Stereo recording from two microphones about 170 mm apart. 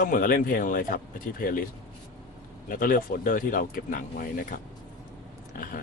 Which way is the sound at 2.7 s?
55° left (ahead or behind).